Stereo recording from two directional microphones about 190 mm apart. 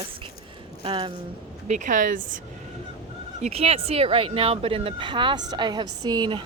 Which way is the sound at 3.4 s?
35° right (ahead or behind).